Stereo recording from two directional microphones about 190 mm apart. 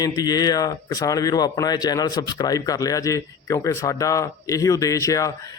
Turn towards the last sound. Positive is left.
turn(degrees=15)  # may be behind; listen again after turning